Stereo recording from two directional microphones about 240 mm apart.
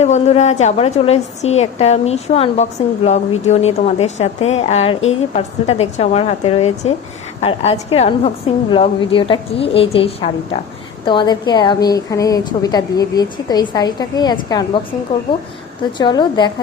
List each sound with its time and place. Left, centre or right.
0.0 s a woman's voice: left
16.0 s a woman's voice: centre